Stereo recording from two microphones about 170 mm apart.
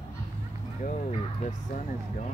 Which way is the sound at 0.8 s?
45° left (ahead or behind).